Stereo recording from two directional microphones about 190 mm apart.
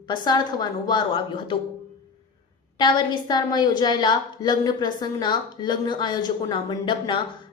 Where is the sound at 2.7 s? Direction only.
25° left (ahead or behind).